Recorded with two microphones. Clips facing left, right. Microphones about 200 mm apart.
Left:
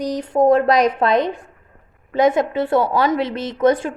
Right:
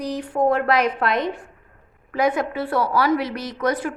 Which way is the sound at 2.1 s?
25° left (ahead or behind).